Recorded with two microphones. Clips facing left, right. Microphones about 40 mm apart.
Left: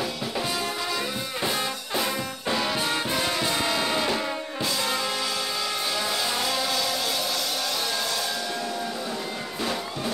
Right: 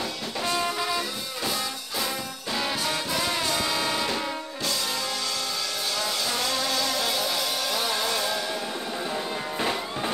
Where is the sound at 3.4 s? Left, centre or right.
Centre.